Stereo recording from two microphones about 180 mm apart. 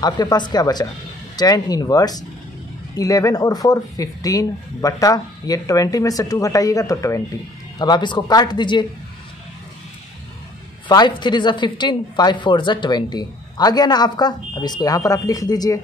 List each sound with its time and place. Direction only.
0.0 s speech: 20° left (ahead or behind)
10.9 s speech: 25° left (ahead or behind)